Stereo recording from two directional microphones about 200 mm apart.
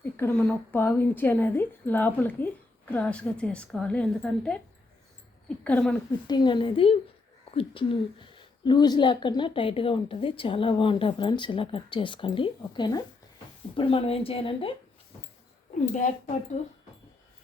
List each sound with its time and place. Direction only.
0.0 s a woman's voice: 10° left (ahead or behind)
5.6 s a woman's voice: 5° left (ahead or behind)
6.2 s a woman's voice: 20° left (ahead or behind)
15.9 s speech: 40° left (ahead or behind)